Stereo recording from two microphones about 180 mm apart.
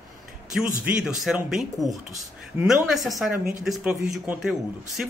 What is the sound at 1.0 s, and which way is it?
A man's voice, centre (ahead or behind).